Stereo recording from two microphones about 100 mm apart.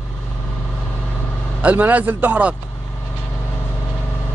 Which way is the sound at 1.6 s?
15° right (ahead or behind).